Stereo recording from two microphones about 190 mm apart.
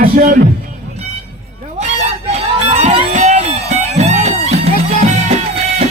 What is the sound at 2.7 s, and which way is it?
Music, 35° right (ahead or behind).